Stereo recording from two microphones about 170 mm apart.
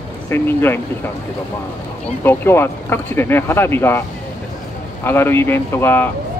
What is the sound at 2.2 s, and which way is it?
Speech, 15° left (ahead or behind).